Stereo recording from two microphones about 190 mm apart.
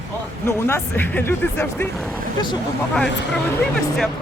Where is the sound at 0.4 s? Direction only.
10° left (ahead or behind).